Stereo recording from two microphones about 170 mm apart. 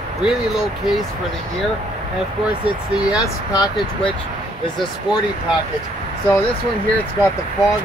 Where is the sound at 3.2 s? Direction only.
20° left (ahead or behind).